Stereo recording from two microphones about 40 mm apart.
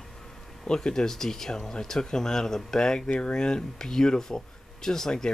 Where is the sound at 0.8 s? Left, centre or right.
Centre.